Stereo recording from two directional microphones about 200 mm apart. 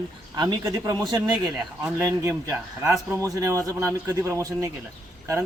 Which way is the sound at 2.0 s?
15° right (ahead or behind).